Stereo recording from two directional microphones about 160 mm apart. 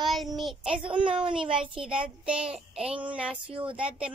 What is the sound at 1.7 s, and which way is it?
Child singing, 5° right (ahead or behind).